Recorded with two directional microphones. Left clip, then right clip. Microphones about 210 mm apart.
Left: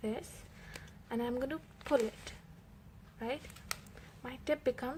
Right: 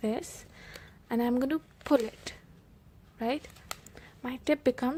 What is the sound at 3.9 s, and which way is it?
Speech, 35° right (ahead or behind).